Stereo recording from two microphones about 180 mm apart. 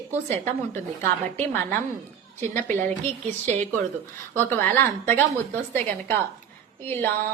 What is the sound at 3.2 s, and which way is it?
Speech, 40° right (ahead or behind).